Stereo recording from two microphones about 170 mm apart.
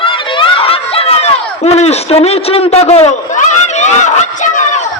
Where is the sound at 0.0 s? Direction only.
30° left (ahead or behind); by 4.8 s 45° left (ahead or behind).